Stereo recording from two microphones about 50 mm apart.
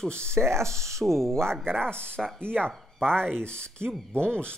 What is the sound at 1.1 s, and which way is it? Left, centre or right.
Speech, right.